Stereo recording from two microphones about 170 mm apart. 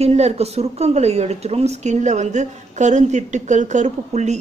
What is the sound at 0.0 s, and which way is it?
A woman's voice, 40° right (ahead or behind).